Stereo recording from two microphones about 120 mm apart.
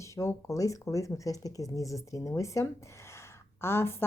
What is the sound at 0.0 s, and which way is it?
A woman's voice, 25° left (ahead or behind).